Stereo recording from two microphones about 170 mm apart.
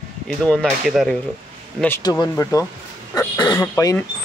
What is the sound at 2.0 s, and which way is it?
Speech, 25° left (ahead or behind).